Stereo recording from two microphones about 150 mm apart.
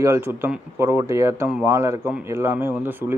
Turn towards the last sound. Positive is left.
turn(degrees=-15)  # may be behind; listen again after turning